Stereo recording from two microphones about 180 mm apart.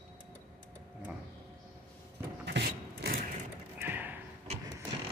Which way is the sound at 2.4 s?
75° right (ahead or behind).